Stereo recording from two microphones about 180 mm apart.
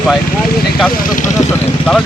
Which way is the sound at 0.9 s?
50° left (ahead or behind).